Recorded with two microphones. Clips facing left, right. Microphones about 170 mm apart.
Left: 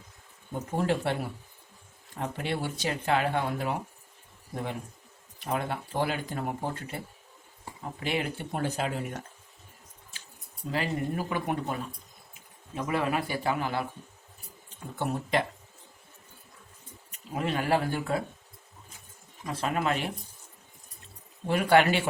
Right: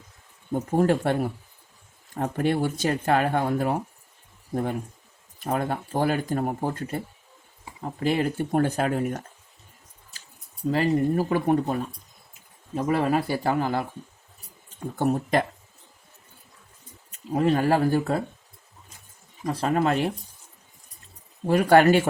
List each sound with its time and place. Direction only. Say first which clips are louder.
0.8 s speech: right 6 dB; 50° right (ahead or behind)
10.7 s speech: right 8 dB; 40° right (ahead or behind)
14.9 s speech: right 6 dB; 45° right (ahead or behind)
17.3 s speech: right 6 dB; 40° right (ahead or behind)
19.5 s speech: right 6 dB; 40° right (ahead or behind)
21.4 s speech: right 5 dB; 45° right (ahead or behind)